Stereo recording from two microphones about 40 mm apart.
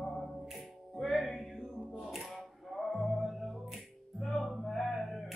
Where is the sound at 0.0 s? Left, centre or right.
Centre.